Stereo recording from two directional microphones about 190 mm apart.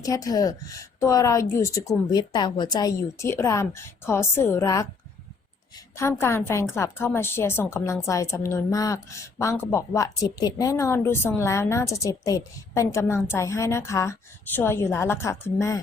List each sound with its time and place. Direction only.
0.0 s a woman's voice: 20° left (ahead or behind)
6.0 s a woman's voice: 15° left (ahead or behind)